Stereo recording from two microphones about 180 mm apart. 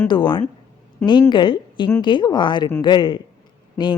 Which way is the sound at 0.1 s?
25° left (ahead or behind).